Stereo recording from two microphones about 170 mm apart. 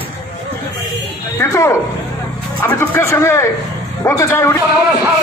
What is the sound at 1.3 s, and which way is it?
Speech, 15° left (ahead or behind).